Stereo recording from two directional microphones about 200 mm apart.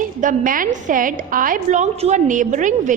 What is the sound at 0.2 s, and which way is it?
A woman's voice, 40° right (ahead or behind).